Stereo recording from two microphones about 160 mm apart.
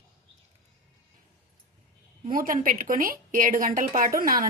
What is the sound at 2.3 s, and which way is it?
A woman's voice, 60° right (ahead or behind).